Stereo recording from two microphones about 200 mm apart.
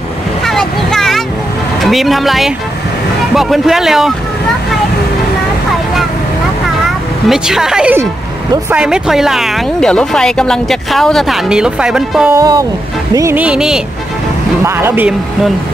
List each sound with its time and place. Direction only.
0.5 s a sound: centre (ahead or behind)
1.8 s speech: centre (ahead or behind)
7.2 s speech: centre (ahead or behind)
12.4 s speech: 20° right (ahead or behind)